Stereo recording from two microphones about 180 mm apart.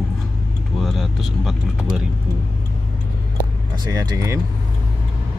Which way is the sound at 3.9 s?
20° right (ahead or behind).